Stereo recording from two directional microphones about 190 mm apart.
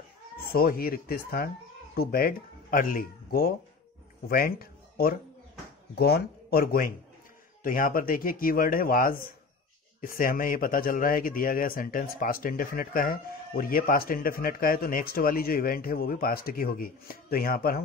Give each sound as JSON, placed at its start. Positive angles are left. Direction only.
{"t": 0.4, "sound": "speech", "side_deg": 50}